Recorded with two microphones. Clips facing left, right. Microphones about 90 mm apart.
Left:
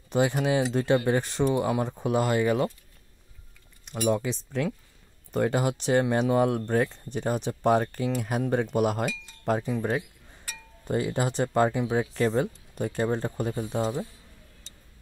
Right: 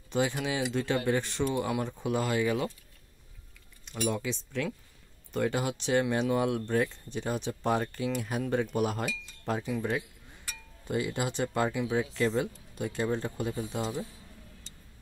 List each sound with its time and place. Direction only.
0.1 s speech: 40° left (ahead or behind)
4.1 s speech: 40° left (ahead or behind)
8.7 s wind chime: 50° left (ahead or behind)
9.5 s speech: 45° left (ahead or behind)